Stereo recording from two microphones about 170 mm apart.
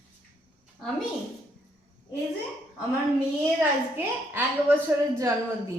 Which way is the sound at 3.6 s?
10° right (ahead or behind).